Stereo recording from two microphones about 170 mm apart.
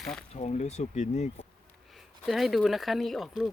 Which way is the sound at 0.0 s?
5° left (ahead or behind).